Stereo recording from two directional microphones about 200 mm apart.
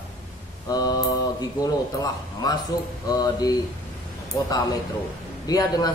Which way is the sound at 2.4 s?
20° left (ahead or behind).